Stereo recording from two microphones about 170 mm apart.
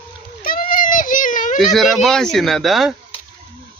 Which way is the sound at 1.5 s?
Centre (ahead or behind).